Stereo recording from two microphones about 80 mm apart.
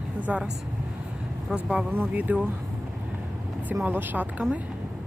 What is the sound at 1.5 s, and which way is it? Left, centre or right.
Speech, centre.